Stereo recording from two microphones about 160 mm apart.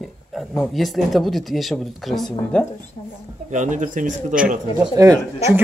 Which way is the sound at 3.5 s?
50° right (ahead or behind).